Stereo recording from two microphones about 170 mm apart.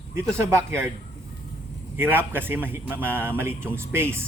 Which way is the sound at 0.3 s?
15° right (ahead or behind).